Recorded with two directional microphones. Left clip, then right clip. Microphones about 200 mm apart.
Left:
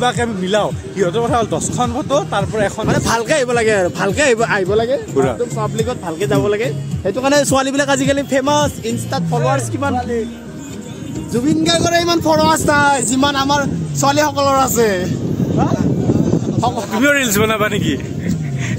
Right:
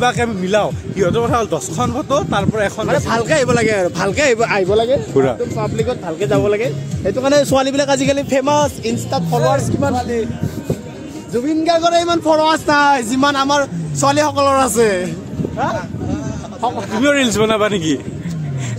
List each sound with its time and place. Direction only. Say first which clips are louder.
0.0 s speech: right 1 dB; centre (ahead or behind)
2.9 s speech: right 2 dB; 60° left (ahead or behind)
3.4 s speech: left 1 dB; 10° right (ahead or behind); by 9.6 s 10° left (ahead or behind)
11.4 s a man's voice: right 1 dB; 65° left (ahead or behind); by 12.9 s 45° left (ahead or behind)
13.1 s speech: right 1 dB; 5° left (ahead or behind)
16.9 s speech: even; 5° left (ahead or behind)